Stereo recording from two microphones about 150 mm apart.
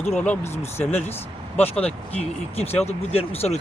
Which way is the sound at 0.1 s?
10° left (ahead or behind).